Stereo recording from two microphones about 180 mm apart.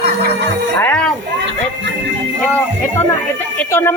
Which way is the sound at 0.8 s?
5° left (ahead or behind).